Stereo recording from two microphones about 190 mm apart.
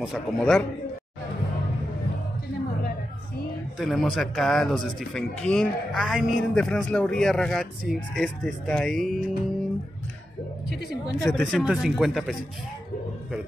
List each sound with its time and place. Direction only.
0.0 s speech: centre (ahead or behind)
3.7 s speech: centre (ahead or behind)
10.7 s speech: centre (ahead or behind)